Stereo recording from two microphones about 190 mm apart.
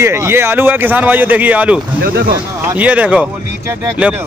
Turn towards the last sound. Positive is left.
turn(degrees=-5)  # may be behind; listen again after turning